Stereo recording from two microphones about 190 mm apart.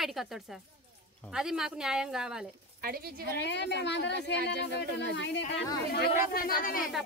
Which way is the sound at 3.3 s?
65° left (ahead or behind).